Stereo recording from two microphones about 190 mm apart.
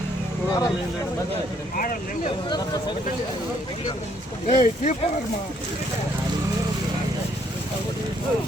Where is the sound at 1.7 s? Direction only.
45° left (ahead or behind).